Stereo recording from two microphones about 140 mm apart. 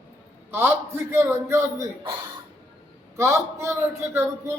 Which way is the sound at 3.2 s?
20° right (ahead or behind).